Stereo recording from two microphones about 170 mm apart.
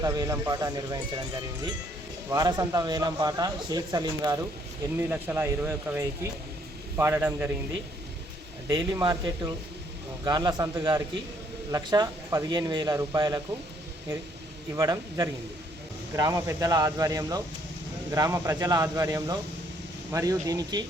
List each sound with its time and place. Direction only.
0.0 s a man's voice: 20° right (ahead or behind)
2.3 s a man's voice: 20° right (ahead or behind)
4.9 s speech: 10° right (ahead or behind)
8.6 s a man's voice: 20° right (ahead or behind)
14.8 s a man's voice: 20° right (ahead or behind)